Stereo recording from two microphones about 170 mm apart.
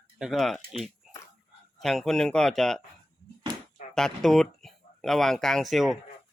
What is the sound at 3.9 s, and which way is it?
Speech, 5° left (ahead or behind).